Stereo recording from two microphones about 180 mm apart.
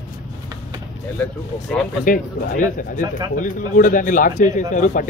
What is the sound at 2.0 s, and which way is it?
Speech, 50° left (ahead or behind).